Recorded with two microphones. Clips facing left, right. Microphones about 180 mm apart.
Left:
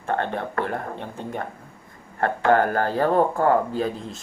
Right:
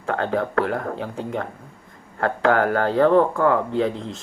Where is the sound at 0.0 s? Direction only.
90° right.